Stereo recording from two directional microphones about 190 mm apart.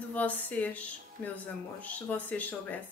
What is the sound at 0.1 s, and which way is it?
Speech, 10° left (ahead or behind).